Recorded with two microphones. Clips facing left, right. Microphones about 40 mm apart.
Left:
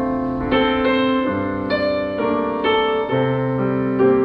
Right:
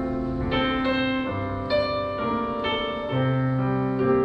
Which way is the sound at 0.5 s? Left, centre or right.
Left.